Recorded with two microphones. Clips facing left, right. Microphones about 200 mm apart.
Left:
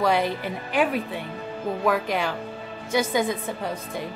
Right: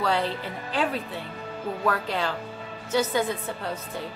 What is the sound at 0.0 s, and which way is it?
A woman's voice, 15° left (ahead or behind).